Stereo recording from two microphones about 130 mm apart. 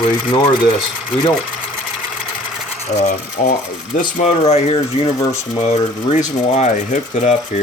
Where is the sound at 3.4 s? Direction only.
80° left.